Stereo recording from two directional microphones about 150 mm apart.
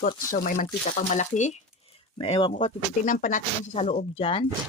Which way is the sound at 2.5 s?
60° left (ahead or behind).